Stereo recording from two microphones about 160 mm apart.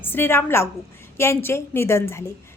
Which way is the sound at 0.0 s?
15° left (ahead or behind).